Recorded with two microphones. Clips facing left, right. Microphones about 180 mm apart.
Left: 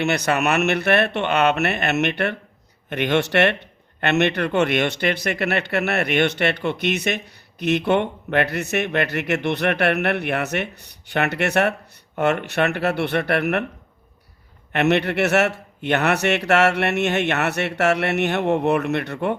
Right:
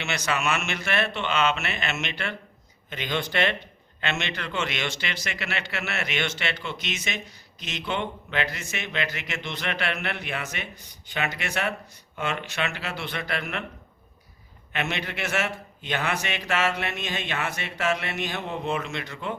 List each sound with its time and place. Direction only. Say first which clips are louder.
0.0 s a man's voice: left 8 dB; 55° left (ahead or behind)
14.7 s a man's voice: left 12 dB; 65° left (ahead or behind)